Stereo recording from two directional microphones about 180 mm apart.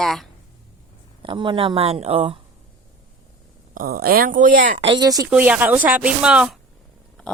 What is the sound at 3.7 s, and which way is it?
Speech, 55° right (ahead or behind).